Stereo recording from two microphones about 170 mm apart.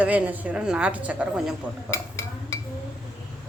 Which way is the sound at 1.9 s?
15° left (ahead or behind).